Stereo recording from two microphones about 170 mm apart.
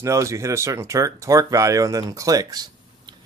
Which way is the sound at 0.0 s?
20° right (ahead or behind).